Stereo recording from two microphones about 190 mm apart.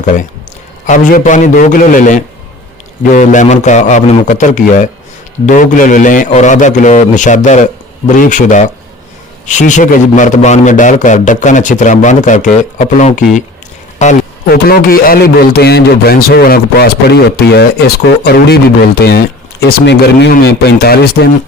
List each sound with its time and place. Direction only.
0.0 s a man's voice: 40° left (ahead or behind)
14.5 s a man's voice: 50° left (ahead or behind)